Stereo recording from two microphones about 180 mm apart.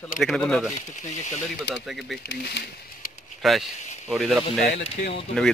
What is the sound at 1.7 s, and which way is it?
Speech, centre (ahead or behind).